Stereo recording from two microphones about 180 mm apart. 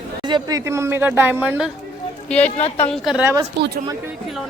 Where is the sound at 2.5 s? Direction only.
35° left (ahead or behind).